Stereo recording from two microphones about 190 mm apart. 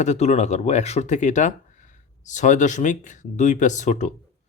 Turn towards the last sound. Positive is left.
turn(degrees=40)  # may be behind; listen again after turning